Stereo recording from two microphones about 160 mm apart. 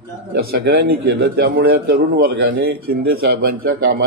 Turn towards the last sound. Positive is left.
turn(degrees=-90)